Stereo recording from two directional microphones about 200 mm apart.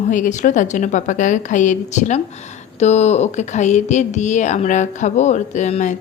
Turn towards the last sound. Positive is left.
turn(degrees=35)  # may be behind; listen again after turning